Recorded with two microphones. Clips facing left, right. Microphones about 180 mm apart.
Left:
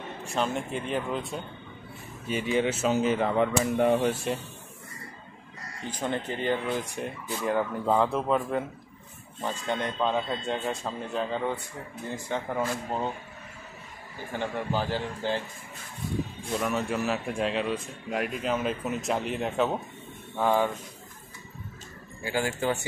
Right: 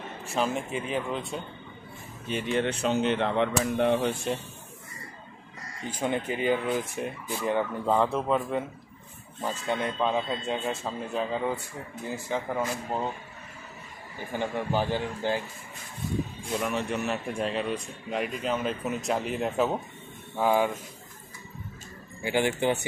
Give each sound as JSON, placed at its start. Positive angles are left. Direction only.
{"t": 0.3, "sound": "speech", "side_deg": -5}
{"t": 5.9, "sound": "speech", "side_deg": -10}
{"t": 14.4, "sound": "speech", "side_deg": -15}
{"t": 16.5, "sound": "speech", "side_deg": 0}
{"t": 22.2, "sound": "speech", "side_deg": -20}